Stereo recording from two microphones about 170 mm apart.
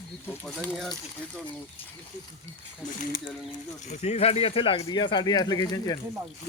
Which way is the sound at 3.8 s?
40° left (ahead or behind).